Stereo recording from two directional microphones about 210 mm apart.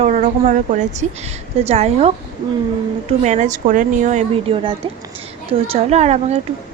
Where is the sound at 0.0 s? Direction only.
35° right (ahead or behind).